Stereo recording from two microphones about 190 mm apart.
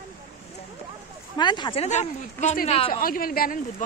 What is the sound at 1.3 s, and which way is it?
Speech, 25° left (ahead or behind).